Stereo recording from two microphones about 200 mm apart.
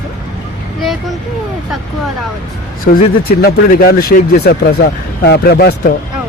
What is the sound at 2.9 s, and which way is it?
Speech, 50° left (ahead or behind).